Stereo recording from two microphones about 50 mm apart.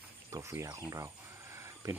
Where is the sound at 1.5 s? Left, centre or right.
Right.